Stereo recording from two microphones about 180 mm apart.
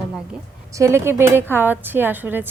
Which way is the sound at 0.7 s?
15° right (ahead or behind).